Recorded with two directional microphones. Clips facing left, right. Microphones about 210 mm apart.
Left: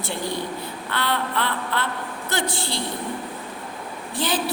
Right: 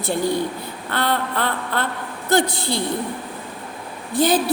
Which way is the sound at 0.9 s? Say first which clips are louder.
Right 3 dB; 45° right (ahead or behind).